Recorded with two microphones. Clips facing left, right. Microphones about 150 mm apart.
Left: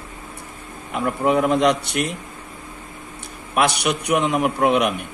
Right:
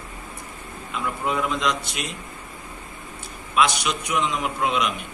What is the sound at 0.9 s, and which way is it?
A man's voice, 55° left (ahead or behind).